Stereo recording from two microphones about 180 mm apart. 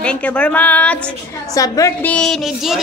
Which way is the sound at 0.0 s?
5° left (ahead or behind).